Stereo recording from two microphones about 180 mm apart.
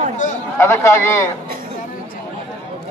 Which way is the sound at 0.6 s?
15° left (ahead or behind).